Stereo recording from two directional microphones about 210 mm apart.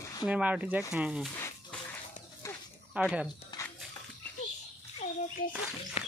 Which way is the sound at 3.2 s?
20° left (ahead or behind).